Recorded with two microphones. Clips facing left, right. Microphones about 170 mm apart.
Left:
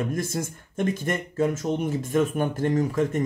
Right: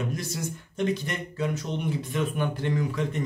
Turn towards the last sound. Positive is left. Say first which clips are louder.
# left 5 dB
turn(degrees=45)  # may be behind; listen again after turning